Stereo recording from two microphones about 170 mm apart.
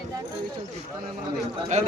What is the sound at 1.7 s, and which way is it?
Speech, 45° right (ahead or behind).